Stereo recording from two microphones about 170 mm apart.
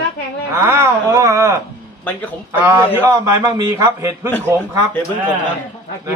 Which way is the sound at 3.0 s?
20° right (ahead or behind).